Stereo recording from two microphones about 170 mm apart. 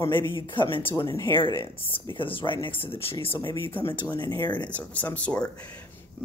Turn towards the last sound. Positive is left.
turn(degrees=10)  # may be behind; listen again after turning